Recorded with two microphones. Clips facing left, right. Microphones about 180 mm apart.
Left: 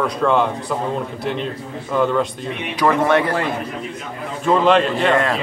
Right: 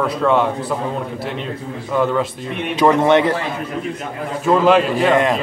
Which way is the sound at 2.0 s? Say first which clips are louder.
Even; centre (ahead or behind).